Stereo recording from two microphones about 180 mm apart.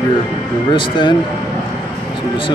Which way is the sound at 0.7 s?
25° left (ahead or behind).